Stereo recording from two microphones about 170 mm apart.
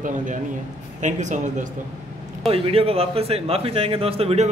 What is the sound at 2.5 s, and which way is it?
A man's voice, 35° right (ahead or behind).